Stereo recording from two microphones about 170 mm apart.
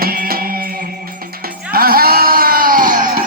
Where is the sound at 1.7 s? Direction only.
60° right (ahead or behind).